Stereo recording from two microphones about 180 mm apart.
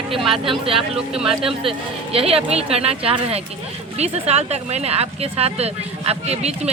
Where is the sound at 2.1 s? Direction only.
35° right (ahead or behind).